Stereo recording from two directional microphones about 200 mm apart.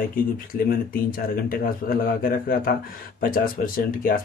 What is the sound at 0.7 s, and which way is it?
Speech, 45° left (ahead or behind).